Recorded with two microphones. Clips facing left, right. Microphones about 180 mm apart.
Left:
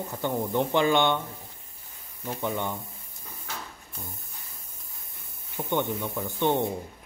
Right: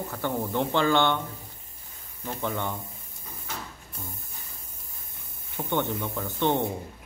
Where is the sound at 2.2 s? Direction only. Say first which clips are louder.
Left 1 dB; 15° left (ahead or behind).